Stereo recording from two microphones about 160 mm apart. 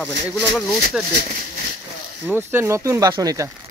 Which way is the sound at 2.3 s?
15° right (ahead or behind).